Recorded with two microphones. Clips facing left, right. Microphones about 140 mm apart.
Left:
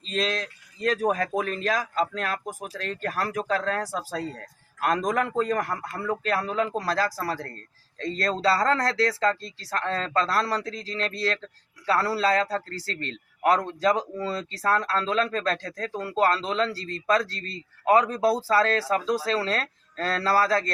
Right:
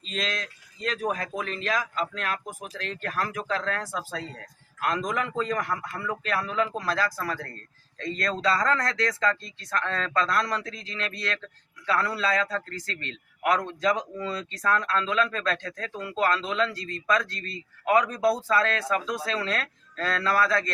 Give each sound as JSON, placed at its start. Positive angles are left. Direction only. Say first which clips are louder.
{"t": 0.0, "sound": "a man's voice", "louder": "left 5 dB", "side_deg": 35}